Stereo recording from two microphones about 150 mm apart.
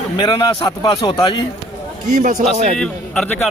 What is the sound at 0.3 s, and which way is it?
A man's voice, 30° left (ahead or behind).